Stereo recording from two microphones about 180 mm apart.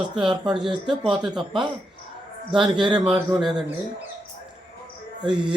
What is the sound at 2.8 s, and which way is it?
Speech, 25° right (ahead or behind).